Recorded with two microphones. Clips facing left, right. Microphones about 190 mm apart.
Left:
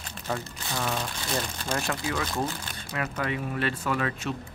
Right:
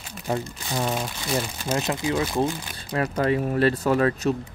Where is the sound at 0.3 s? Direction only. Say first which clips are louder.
Right 5 dB; 20° right (ahead or behind).